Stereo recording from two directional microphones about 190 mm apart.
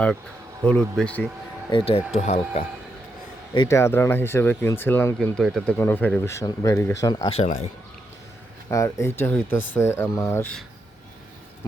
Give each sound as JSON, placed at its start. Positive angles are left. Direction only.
{"t": 0.6, "sound": "speech", "side_deg": 5}
{"t": 1.7, "sound": "speech", "side_deg": 30}
{"t": 3.5, "sound": "speech", "side_deg": 20}
{"t": 7.3, "sound": "speech", "side_deg": 35}
{"t": 8.7, "sound": "speech", "side_deg": 15}